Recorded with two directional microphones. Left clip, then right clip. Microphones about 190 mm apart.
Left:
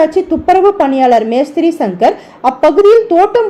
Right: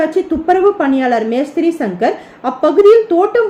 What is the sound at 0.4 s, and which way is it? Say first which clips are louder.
A woman's voice: left 3 dB; 15° left (ahead or behind).